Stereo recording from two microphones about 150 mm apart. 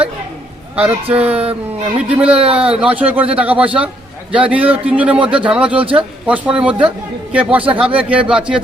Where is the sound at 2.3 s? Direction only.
40° right (ahead or behind).